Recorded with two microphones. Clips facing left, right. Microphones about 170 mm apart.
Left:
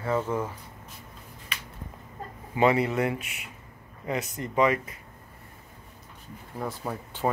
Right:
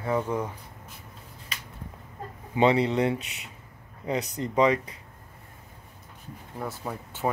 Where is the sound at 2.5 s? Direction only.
25° right (ahead or behind).